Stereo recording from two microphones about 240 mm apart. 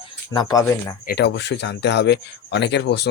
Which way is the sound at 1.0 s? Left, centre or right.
Left.